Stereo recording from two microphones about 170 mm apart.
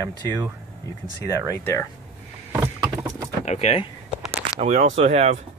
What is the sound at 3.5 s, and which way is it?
Speech, 40° left (ahead or behind).